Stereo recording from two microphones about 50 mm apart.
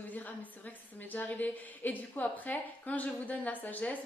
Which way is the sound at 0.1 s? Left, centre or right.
Left.